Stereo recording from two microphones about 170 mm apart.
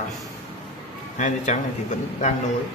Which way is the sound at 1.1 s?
45° left (ahead or behind).